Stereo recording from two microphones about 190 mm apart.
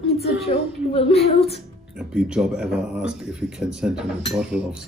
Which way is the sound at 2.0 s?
5° right (ahead or behind).